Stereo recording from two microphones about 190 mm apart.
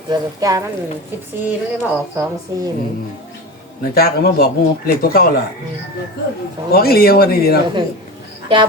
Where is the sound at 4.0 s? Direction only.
55° left (ahead or behind).